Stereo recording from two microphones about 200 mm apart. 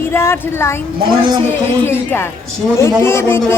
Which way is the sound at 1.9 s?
10° left (ahead or behind).